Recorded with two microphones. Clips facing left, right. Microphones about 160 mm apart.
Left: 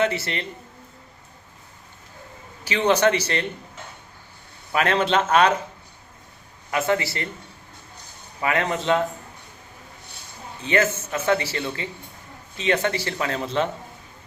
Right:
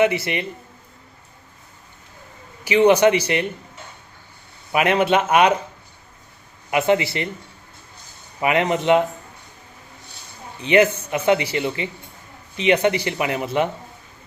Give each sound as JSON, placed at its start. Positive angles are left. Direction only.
{"t": 0.0, "sound": "speech", "side_deg": -10}
{"t": 2.6, "sound": "speech", "side_deg": -15}
{"t": 4.7, "sound": "speech", "side_deg": -15}
{"t": 6.7, "sound": "speech", "side_deg": -20}
{"t": 8.4, "sound": "speech", "side_deg": -20}
{"t": 10.6, "sound": "speech", "side_deg": -15}